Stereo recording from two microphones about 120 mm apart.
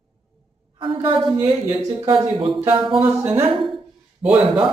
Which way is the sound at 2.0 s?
45° right (ahead or behind).